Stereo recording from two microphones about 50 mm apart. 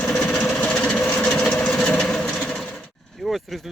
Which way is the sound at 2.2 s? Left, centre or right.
Left.